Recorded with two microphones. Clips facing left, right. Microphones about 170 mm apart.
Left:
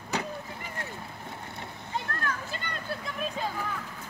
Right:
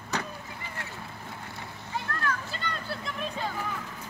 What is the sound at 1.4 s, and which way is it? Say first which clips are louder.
Boat: left 1 dB; 25° left (ahead or behind).